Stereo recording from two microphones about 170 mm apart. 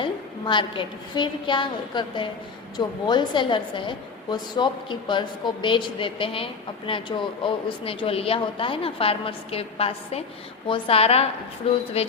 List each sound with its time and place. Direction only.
0.0 s a woman's voice: 30° left (ahead or behind)